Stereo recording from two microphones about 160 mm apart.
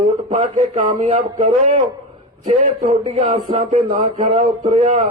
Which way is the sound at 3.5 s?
35° right (ahead or behind).